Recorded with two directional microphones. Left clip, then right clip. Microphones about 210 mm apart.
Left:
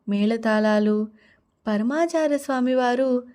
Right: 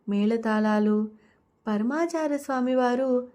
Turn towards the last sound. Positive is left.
turn(degrees=35)  # may be behind; listen again after turning